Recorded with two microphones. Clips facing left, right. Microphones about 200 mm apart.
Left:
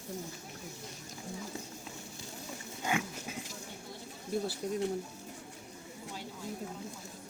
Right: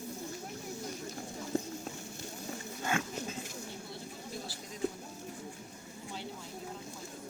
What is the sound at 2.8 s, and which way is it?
Dog, 15° left (ahead or behind).